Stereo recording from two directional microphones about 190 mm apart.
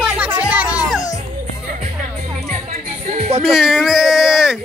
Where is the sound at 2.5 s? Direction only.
40° right (ahead or behind).